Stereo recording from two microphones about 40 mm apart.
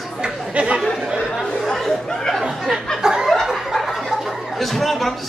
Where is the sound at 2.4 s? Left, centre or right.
Centre.